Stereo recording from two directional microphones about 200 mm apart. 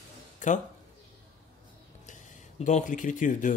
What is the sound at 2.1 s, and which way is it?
Speech, 35° left (ahead or behind).